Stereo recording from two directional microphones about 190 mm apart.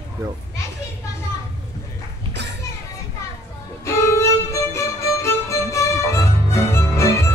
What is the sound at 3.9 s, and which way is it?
Music, 15° left (ahead or behind).